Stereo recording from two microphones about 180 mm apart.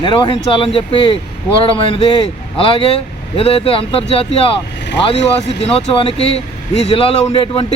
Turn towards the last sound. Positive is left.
turn(degrees=30)  # may be behind; listen again after turning